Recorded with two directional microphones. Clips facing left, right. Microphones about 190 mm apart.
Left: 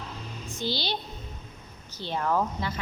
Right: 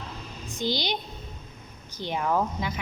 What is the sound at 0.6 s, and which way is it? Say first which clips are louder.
Speech: right 3 dB; 15° right (ahead or behind).